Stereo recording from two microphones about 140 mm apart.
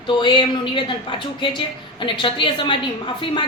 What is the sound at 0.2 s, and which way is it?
A woman's voice, 35° left (ahead or behind).